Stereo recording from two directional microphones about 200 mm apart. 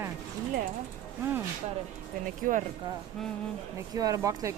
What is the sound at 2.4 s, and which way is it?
Speech, 45° right (ahead or behind).